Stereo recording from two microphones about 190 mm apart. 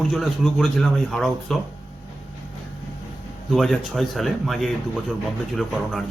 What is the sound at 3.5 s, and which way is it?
Speech, centre (ahead or behind).